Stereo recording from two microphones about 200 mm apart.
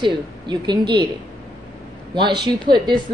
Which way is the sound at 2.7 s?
25° right (ahead or behind).